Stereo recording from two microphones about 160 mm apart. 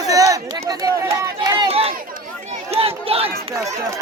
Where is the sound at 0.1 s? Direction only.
20° right (ahead or behind).